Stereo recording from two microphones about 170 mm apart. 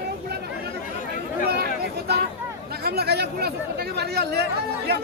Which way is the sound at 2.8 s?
70° right (ahead or behind).